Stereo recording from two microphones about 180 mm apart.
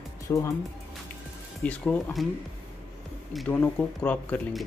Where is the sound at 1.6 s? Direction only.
10° left (ahead or behind).